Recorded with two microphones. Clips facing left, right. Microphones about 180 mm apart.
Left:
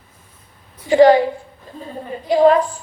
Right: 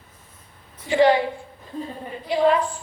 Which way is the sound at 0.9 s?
40° left (ahead or behind).